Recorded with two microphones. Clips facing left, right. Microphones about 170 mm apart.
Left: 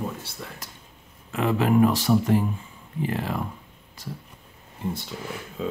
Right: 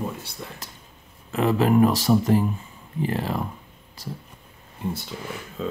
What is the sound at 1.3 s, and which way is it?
Speech, 35° right (ahead or behind).